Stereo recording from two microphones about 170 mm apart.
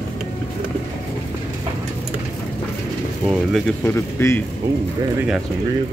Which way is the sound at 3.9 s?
15° left (ahead or behind).